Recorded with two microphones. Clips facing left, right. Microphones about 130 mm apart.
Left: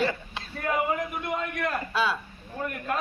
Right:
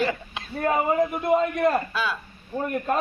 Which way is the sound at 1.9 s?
25° left (ahead or behind).